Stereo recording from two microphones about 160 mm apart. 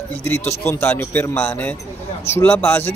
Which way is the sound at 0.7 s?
15° left (ahead or behind).